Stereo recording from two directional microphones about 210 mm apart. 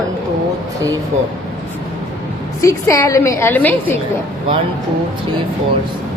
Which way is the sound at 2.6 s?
15° left (ahead or behind).